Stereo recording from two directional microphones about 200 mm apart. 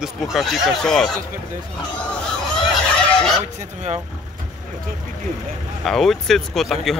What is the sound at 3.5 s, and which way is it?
Speech, 35° right (ahead or behind).